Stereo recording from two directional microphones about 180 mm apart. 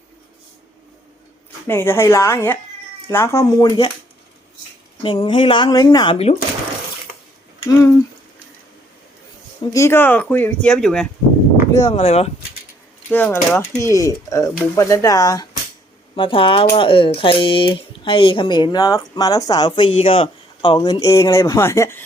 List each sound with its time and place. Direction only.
1.6 s speech: 15° left (ahead or behind)
5.0 s speech: 30° left (ahead or behind)
7.6 s a sound: 15° left (ahead or behind)
9.7 s speech: 15° left (ahead or behind)
11.7 s speech: 20° left (ahead or behind)
11.9 s speech: 35° left (ahead or behind)
13.1 s speech: 10° left (ahead or behind)